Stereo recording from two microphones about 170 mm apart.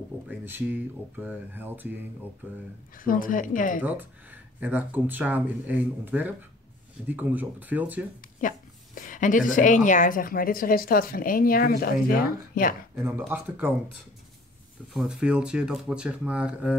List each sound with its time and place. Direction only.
0.3 s speech: 10° right (ahead or behind)
3.0 s speech: 55° left (ahead or behind)
3.8 s speech: 10° right (ahead or behind)
8.4 s a woman's voice: 50° left (ahead or behind)
13.3 s speech: 10° right (ahead or behind)
15.0 s speech: 5° right (ahead or behind)